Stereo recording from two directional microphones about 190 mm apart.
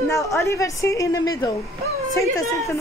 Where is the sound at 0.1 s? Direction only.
15° left (ahead or behind).